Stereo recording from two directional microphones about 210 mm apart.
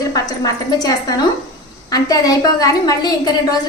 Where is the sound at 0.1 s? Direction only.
15° left (ahead or behind).